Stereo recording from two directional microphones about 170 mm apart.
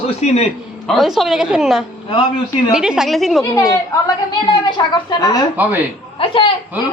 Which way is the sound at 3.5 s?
20° left (ahead or behind).